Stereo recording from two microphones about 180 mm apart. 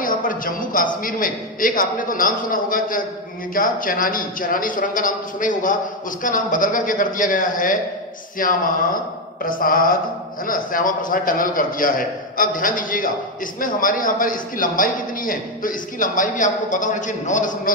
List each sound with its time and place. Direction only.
0.0 s a man's voice: 50° left (ahead or behind)